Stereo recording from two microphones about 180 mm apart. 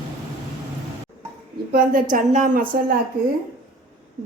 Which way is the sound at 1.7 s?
50° right (ahead or behind).